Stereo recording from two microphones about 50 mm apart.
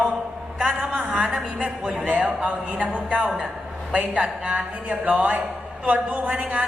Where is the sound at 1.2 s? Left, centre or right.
Right.